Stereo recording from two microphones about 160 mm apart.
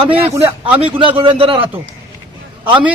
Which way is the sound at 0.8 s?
35° right (ahead or behind).